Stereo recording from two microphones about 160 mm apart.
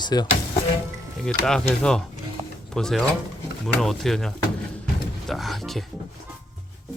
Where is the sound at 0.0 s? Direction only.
25° left (ahead or behind).